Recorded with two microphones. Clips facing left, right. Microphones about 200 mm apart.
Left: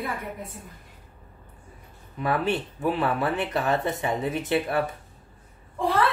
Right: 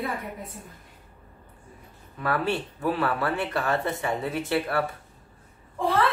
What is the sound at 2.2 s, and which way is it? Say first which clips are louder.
Speech: left 1 dB; 20° left (ahead or behind).